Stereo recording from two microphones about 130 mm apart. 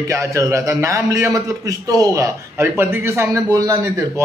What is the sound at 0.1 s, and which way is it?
A man's voice, 25° right (ahead or behind).